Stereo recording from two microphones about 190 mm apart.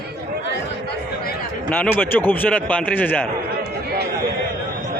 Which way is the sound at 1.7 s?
10° left (ahead or behind).